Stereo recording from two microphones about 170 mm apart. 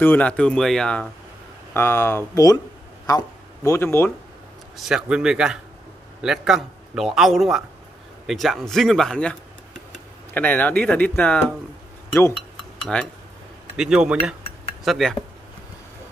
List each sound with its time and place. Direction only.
0.0 s a man's voice: 10° left (ahead or behind)
4.7 s a man's voice: 5° right (ahead or behind)
12.9 s a man's voice: 5° left (ahead or behind)